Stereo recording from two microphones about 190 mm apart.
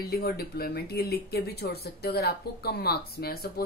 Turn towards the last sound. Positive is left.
turn(degrees=55)  # may be behind; listen again after turning